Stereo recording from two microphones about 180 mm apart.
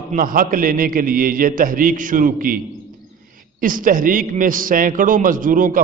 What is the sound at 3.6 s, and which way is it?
A man's voice, 50° right (ahead or behind).